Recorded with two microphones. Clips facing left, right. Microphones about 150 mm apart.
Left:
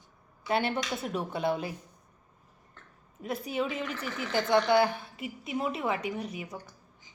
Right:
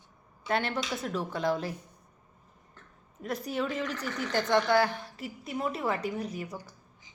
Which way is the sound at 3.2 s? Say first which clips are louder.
Even; 5° left (ahead or behind).